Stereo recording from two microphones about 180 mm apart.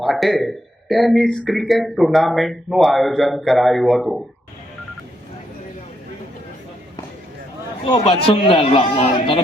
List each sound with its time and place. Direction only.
0.0 s speech: centre (ahead or behind)
7.9 s a man's voice: 35° left (ahead or behind)